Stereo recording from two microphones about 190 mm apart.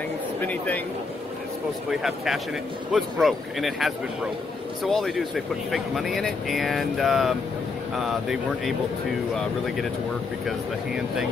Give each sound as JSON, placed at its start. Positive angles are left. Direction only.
{"t": 0.4, "sound": "speech", "side_deg": 10}
{"t": 1.9, "sound": "speech", "side_deg": 0}